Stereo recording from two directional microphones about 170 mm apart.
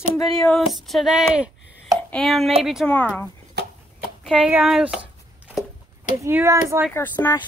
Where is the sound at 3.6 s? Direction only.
75° right (ahead or behind).